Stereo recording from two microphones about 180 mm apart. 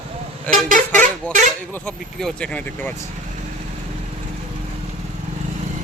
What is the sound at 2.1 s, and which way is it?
Speech, 5° left (ahead or behind).